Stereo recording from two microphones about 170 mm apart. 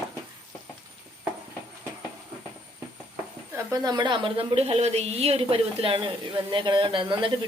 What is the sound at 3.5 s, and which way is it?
A woman's voice, 20° right (ahead or behind).